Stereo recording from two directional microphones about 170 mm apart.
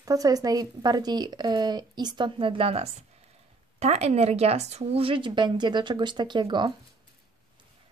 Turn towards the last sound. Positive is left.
turn(degrees=-25)  # may be behind; listen again after turning